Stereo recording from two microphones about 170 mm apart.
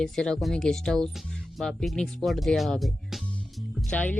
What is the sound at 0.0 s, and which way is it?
Speech, 5° left (ahead or behind).